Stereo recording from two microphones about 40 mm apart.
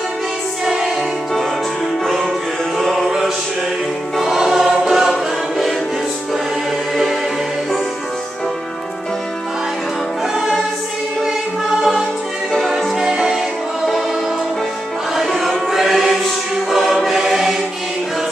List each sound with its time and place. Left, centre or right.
2.8 s music: centre
4.2 s choir: centre
11.8 s music: centre
12.9 s music: centre
15.1 s music: centre
15.7 s choir: centre